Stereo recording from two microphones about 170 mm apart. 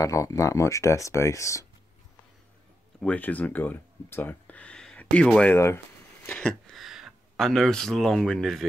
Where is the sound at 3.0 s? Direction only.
10° left (ahead or behind).